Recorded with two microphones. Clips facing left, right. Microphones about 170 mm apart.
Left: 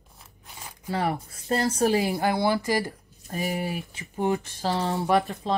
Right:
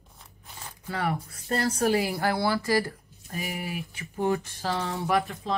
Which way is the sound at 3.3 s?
35° left (ahead or behind).